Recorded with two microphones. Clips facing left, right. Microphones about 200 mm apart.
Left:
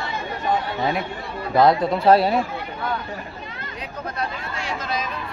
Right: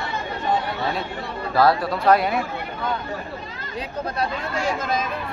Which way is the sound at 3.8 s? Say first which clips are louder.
Right 3 dB; 40° right (ahead or behind).